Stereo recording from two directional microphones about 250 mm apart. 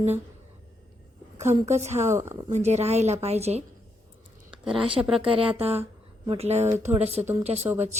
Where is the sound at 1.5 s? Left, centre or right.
Right.